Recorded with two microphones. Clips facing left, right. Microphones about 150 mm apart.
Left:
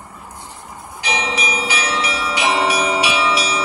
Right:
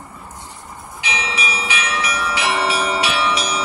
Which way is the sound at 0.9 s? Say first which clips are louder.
Left 3 dB; 40° left (ahead or behind).